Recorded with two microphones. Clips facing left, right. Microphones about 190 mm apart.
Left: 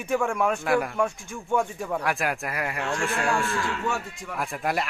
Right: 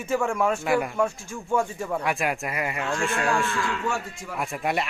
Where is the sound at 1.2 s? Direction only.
Centre (ahead or behind).